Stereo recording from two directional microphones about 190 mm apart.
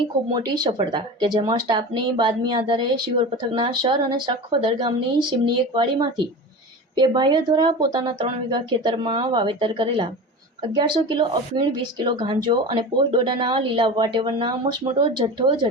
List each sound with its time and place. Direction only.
0.0 s speech: 20° right (ahead or behind)